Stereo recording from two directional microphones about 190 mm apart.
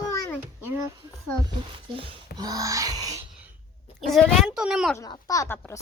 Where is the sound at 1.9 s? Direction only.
25° right (ahead or behind).